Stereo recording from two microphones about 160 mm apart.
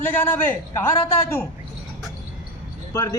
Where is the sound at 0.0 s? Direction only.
10° left (ahead or behind).